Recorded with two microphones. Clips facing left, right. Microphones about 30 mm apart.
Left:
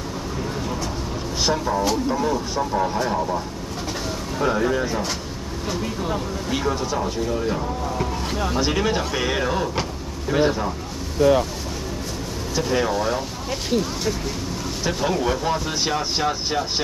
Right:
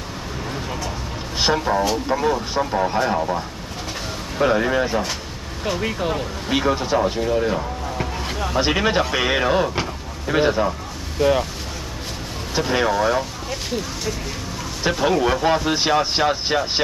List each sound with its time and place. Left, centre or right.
1.4 s speech: right
12.5 s speech: right
14.8 s speech: right